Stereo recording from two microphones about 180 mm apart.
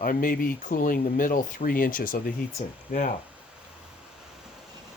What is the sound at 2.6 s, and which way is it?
Speech, 40° left (ahead or behind).